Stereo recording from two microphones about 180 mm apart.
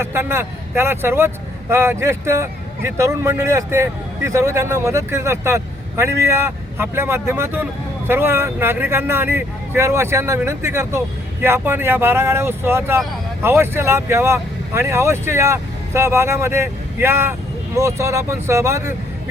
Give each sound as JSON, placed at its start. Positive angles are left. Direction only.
{"t": 0.0, "sound": "a man's voice", "side_deg": -15}